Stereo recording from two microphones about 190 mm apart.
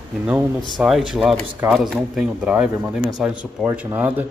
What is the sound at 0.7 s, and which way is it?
Speech, centre (ahead or behind).